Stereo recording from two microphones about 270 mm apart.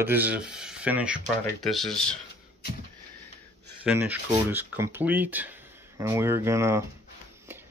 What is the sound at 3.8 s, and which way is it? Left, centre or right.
Speech, centre.